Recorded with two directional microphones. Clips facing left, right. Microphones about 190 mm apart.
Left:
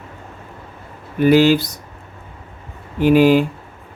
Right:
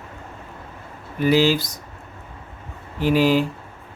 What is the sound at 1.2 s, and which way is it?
Speech, 60° left (ahead or behind).